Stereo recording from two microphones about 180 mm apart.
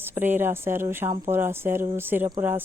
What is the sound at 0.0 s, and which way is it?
Speech, 10° right (ahead or behind).